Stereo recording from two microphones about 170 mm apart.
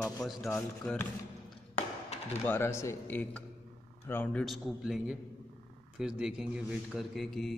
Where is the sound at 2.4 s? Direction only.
15° left (ahead or behind).